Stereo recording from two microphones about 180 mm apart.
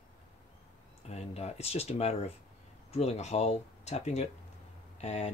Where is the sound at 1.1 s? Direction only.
35° left (ahead or behind).